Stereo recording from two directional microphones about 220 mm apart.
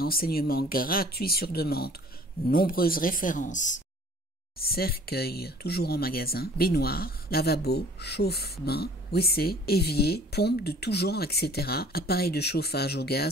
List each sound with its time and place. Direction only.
0.0 s speech: 40° left (ahead or behind)